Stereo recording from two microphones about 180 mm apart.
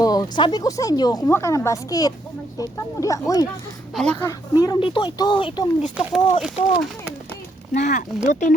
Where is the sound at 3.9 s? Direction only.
5° left (ahead or behind).